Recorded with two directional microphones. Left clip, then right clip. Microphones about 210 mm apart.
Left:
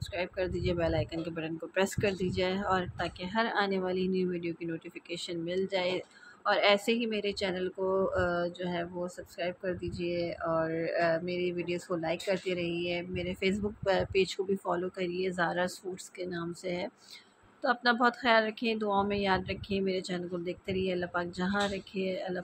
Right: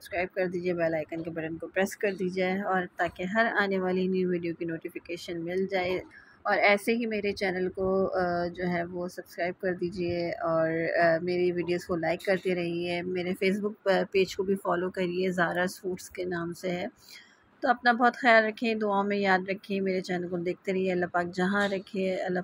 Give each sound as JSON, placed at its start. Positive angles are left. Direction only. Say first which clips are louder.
{"t": 0.1, "sound": "speech", "louder": "right 4 dB", "side_deg": -10}